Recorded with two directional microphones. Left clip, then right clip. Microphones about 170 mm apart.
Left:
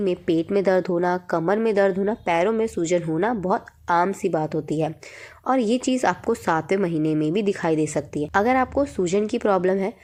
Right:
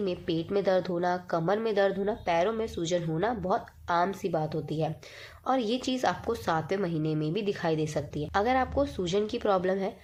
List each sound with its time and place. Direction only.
0.0 s a woman's voice: 35° left (ahead or behind)